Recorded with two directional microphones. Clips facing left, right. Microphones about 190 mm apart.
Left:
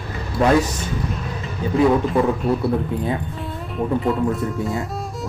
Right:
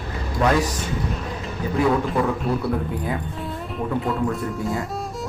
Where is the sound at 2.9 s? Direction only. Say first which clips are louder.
Left 4 dB; 25° left (ahead or behind).